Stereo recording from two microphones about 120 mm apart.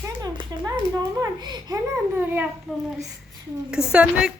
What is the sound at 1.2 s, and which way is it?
Speech, 35° right (ahead or behind).